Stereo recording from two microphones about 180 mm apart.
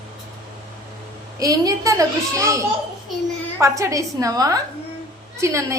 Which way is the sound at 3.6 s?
15° right (ahead or behind).